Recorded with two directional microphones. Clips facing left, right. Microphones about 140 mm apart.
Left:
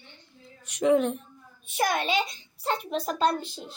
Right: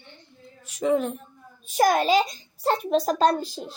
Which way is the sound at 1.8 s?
40° right (ahead or behind).